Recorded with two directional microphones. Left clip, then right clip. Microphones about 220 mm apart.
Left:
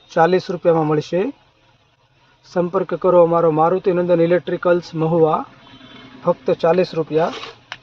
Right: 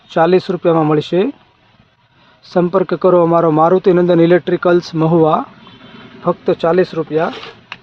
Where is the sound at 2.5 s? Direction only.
40° right (ahead or behind); by 7.5 s 20° right (ahead or behind).